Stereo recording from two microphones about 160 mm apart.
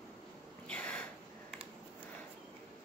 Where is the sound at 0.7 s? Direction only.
5° left (ahead or behind).